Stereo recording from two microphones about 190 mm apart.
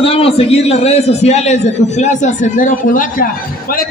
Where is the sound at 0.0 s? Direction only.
30° left (ahead or behind).